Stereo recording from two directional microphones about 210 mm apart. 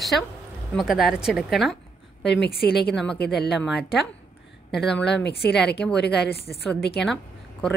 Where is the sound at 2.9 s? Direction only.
5° left (ahead or behind).